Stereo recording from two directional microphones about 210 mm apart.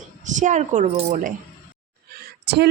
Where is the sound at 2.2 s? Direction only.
50° right (ahead or behind).